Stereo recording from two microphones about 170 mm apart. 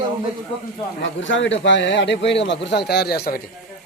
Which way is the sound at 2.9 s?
75° left (ahead or behind).